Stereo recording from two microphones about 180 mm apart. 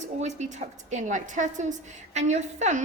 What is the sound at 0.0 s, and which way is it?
A woman's voice, 40° right (ahead or behind).